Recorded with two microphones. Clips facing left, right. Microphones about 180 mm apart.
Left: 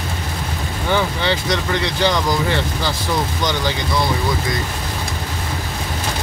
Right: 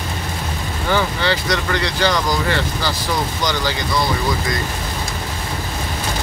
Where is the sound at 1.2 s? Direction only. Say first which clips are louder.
Even; 20° left (ahead or behind).